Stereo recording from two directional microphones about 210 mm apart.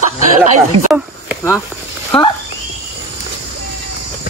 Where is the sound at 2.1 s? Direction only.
25° left (ahead or behind).